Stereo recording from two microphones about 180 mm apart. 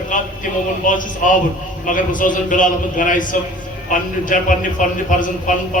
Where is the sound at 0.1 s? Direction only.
45° left (ahead or behind).